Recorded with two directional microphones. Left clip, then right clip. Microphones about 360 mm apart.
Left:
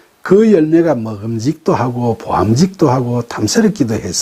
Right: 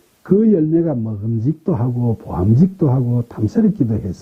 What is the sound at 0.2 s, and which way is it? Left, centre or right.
Speech, centre.